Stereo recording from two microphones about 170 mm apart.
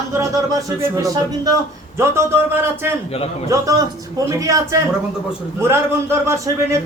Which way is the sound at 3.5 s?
20° right (ahead or behind).